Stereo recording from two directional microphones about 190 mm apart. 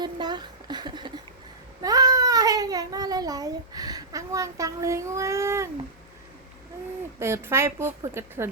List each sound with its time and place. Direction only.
0.0 s a child's voice: 25° right (ahead or behind)
7.2 s a woman's voice: 15° right (ahead or behind)